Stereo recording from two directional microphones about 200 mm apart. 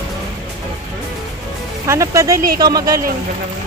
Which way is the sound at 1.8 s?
15° right (ahead or behind).